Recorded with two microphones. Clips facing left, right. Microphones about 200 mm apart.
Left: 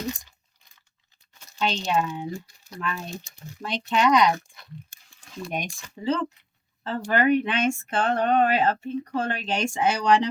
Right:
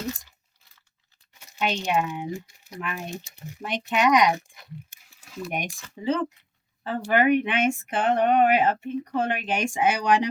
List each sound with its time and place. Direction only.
1.4 s speech: 15° right (ahead or behind)
5.0 s a sound: 5° right (ahead or behind)
6.0 s speech: 20° right (ahead or behind)